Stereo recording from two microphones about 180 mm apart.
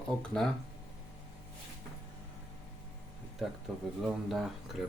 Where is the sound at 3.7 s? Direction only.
Centre (ahead or behind).